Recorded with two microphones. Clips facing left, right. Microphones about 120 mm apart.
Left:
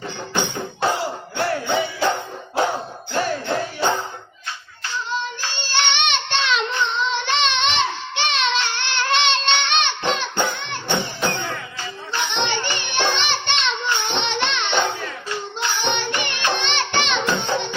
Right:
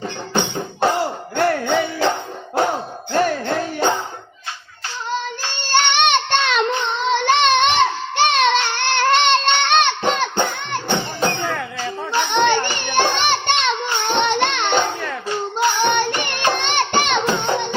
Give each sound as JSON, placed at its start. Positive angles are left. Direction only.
{"t": 0.9, "sound": "a sound", "side_deg": -50}
{"t": 3.1, "sound": "music", "side_deg": -45}
{"t": 5.6, "sound": "child singing", "side_deg": -50}
{"t": 11.3, "sound": "music", "side_deg": -60}
{"t": 12.1, "sound": "music", "side_deg": -45}